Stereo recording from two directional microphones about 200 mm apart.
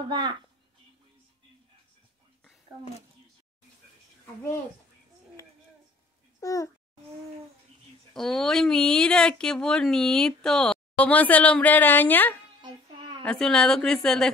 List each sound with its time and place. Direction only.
0.1 s a child's voice: 20° right (ahead or behind)
6.4 s a child's voice: 15° left (ahead or behind)
8.1 s speech: centre (ahead or behind)
12.6 s child singing: 25° right (ahead or behind)
13.2 s speech: 5° left (ahead or behind)